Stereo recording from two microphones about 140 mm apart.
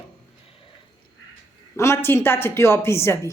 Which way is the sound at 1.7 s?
20° left (ahead or behind).